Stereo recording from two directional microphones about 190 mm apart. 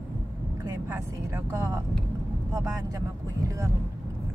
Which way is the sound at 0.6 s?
15° right (ahead or behind).